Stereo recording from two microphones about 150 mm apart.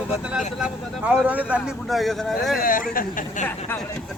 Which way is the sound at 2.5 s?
70° left (ahead or behind).